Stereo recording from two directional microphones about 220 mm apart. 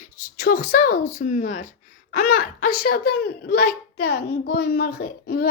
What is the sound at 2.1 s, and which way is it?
A child's voice, 45° left (ahead or behind).